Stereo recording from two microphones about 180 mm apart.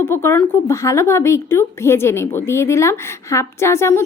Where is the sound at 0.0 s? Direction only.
15° left (ahead or behind).